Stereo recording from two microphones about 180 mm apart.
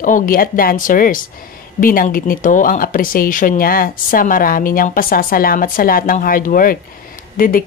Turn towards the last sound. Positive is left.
turn(degrees=50)  # may be behind; listen again after turning